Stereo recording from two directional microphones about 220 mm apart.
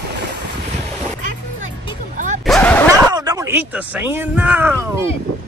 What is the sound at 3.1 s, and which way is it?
Speech, 15° right (ahead or behind).